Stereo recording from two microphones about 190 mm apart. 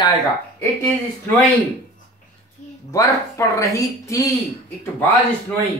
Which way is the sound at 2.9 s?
15° left (ahead or behind).